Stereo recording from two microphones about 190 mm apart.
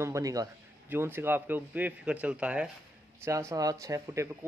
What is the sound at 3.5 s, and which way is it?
Speech, 20° right (ahead or behind).